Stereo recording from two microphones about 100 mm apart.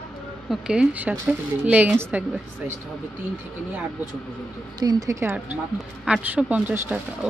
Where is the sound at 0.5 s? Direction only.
10° right (ahead or behind).